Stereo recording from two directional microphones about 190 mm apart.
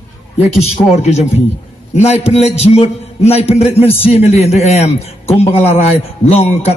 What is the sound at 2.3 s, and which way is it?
A man's voice, 35° left (ahead or behind).